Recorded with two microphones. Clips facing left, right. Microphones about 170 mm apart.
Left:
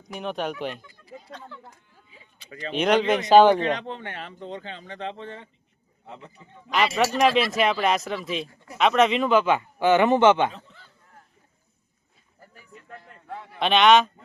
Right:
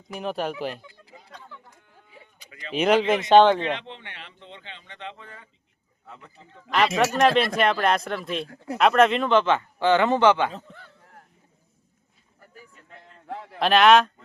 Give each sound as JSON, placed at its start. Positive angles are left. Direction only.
{"t": 0.1, "sound": "speech", "side_deg": 0}
{"t": 2.5, "sound": "speech", "side_deg": 35}
{"t": 2.7, "sound": "speech", "side_deg": -5}
{"t": 3.6, "sound": "speech", "side_deg": 40}
{"t": 6.7, "sound": "a man's voice", "side_deg": 0}
{"t": 10.5, "sound": "a man's voice", "side_deg": -55}
{"t": 13.2, "sound": "a sound", "side_deg": -75}
{"t": 13.6, "sound": "speech", "side_deg": 0}